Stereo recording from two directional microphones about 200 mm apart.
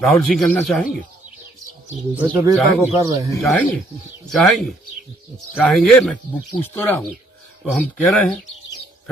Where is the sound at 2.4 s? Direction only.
15° right (ahead or behind).